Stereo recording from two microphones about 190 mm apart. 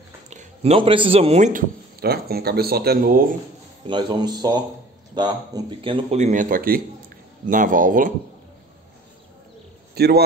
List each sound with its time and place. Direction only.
0.3 s speech: 35° right (ahead or behind)
2.0 s speech: 55° right (ahead or behind)
3.8 s speech: 25° right (ahead or behind); by 8.1 s 45° right (ahead or behind)
9.9 s a man's voice: 55° right (ahead or behind)